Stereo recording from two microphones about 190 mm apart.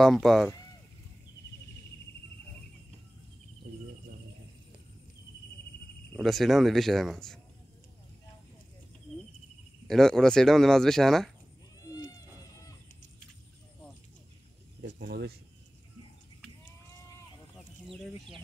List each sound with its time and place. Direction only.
0.0 s speech: centre (ahead or behind)
6.1 s speech: centre (ahead or behind)
9.8 s speech: centre (ahead or behind)
14.8 s speech: 60° right (ahead or behind)